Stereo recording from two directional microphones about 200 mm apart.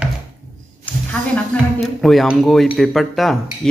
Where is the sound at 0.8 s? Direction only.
5° left (ahead or behind).